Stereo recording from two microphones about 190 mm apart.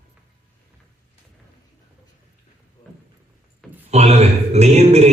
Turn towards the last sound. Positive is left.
turn(degrees=-35)  # may be behind; listen again after turning